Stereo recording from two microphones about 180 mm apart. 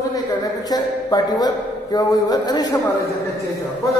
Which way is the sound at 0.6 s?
20° left (ahead or behind).